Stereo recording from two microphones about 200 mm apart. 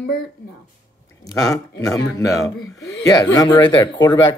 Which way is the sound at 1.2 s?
15° left (ahead or behind).